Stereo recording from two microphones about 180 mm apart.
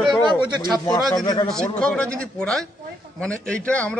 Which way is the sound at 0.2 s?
25° right (ahead or behind).